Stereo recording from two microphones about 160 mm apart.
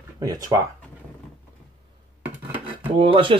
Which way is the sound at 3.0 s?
35° right (ahead or behind).